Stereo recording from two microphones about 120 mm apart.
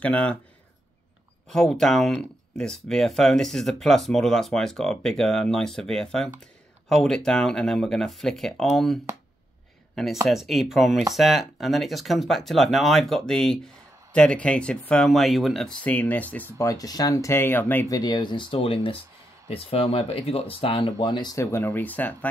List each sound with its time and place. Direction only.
0.0 s speech: 10° left (ahead or behind)
1.5 s speech: 5° left (ahead or behind)
10.2 s speech: centre (ahead or behind)
16.5 s speech: 30° left (ahead or behind)
17.8 s speech: 35° left (ahead or behind)
21.4 s speech: 20° left (ahead or behind)